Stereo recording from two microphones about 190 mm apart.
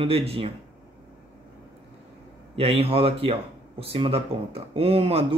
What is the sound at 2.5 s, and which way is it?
Speech, 30° right (ahead or behind).